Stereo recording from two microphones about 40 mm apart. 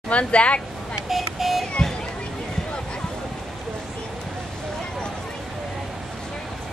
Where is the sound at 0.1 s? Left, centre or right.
Left.